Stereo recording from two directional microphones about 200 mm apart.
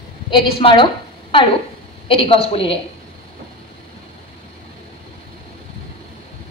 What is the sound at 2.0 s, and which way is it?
Speech, 25° left (ahead or behind).